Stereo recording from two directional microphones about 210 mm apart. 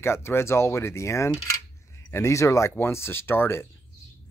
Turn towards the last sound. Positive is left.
turn(degrees=10)  # may be behind; listen again after turning